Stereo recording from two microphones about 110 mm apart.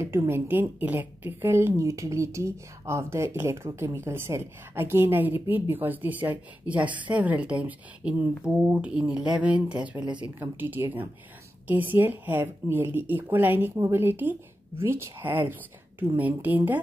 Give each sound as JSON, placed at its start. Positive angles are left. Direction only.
{"t": 0.0, "sound": "a woman's voice", "side_deg": -20}